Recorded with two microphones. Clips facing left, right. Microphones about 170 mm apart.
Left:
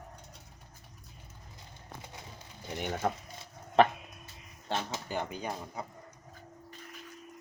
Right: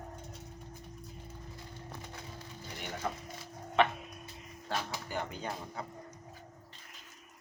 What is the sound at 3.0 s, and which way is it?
Speech, 55° left (ahead or behind).